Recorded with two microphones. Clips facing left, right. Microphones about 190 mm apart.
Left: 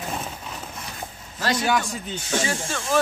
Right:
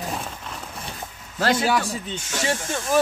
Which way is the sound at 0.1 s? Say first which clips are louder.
Even; centre (ahead or behind).